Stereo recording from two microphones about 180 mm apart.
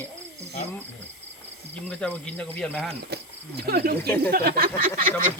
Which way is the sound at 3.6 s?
60° right (ahead or behind).